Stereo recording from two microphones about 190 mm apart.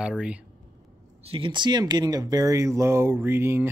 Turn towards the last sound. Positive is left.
turn(degrees=-10)  # may be behind; listen again after turning